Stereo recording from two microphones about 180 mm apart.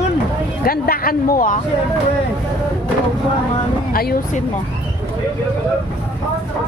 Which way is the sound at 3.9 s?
55° left (ahead or behind).